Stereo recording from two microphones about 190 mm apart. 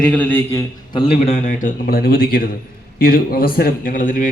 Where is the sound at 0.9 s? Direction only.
30° left (ahead or behind).